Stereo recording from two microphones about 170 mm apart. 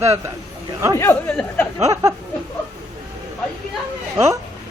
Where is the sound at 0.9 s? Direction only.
15° left (ahead or behind).